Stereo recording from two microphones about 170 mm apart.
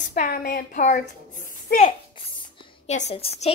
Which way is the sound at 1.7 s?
65° left (ahead or behind).